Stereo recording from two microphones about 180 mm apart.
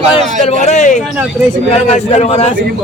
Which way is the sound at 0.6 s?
40° left (ahead or behind).